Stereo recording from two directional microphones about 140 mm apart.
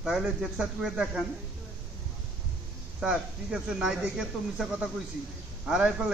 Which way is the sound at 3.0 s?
5° right (ahead or behind).